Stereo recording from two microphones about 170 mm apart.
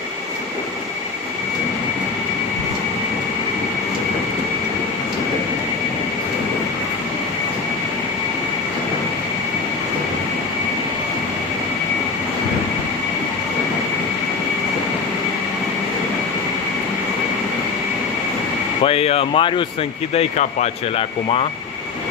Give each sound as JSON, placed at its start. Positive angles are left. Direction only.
{"t": 18.9, "sound": "speech", "side_deg": 35}
{"t": 20.2, "sound": "speech", "side_deg": 40}